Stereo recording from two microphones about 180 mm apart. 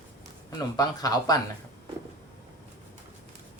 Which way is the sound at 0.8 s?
20° left (ahead or behind).